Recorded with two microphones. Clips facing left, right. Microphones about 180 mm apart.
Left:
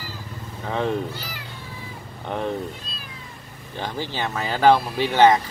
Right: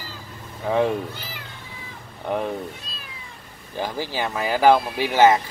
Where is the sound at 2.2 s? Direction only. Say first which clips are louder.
Right 2 dB; 10° right (ahead or behind).